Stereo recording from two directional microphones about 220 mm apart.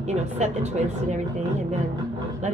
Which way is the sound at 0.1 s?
30° right (ahead or behind).